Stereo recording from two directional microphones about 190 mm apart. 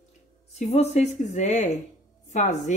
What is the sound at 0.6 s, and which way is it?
Speech, 35° left (ahead or behind).